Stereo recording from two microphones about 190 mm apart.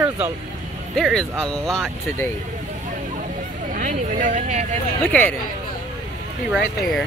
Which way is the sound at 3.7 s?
45° right (ahead or behind).